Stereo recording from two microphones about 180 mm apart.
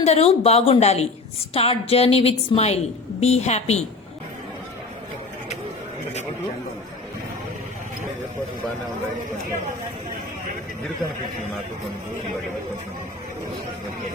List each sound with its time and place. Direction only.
0.0 s a woman's voice: 35° left (ahead or behind)